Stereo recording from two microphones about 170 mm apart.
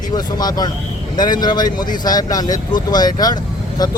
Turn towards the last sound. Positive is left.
turn(degrees=25)  # may be behind; listen again after turning